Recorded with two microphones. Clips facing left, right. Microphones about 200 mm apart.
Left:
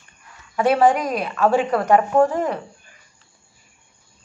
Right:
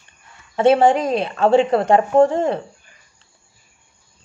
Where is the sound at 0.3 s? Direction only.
25° right (ahead or behind).